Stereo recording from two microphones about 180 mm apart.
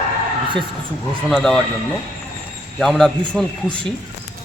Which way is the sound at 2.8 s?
Centre (ahead or behind).